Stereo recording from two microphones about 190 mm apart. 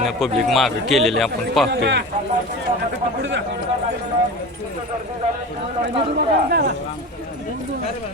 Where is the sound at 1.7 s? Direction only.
65° right (ahead or behind).